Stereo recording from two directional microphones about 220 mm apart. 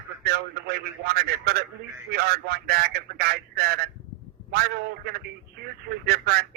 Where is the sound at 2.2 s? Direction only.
45° right (ahead or behind).